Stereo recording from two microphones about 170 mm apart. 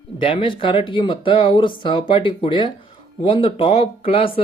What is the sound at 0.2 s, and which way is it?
Speech, 30° left (ahead or behind).